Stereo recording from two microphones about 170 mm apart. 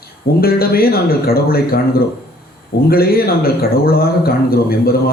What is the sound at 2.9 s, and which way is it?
Speech, 65° left (ahead or behind).